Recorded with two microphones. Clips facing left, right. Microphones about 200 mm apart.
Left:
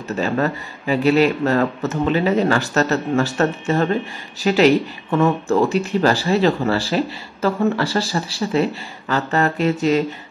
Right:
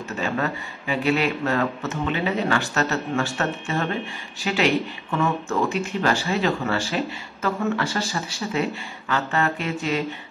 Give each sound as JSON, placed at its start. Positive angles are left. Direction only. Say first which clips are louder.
{"t": 0.1, "sound": "speech", "louder": "left 6 dB", "side_deg": 40}